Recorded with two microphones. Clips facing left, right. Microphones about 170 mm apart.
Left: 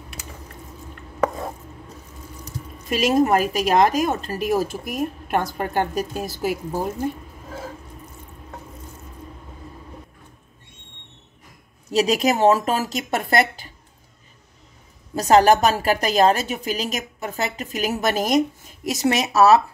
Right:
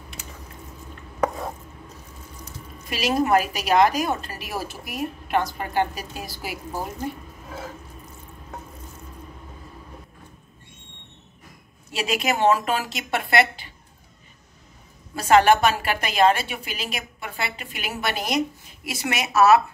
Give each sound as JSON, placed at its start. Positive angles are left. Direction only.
{"t": 2.4, "sound": "a woman's voice", "side_deg": 45}
{"t": 11.9, "sound": "a woman's voice", "side_deg": 40}
{"t": 15.1, "sound": "a woman's voice", "side_deg": 40}